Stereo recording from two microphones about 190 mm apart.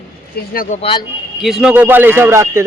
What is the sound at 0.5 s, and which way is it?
Speech, 50° left (ahead or behind).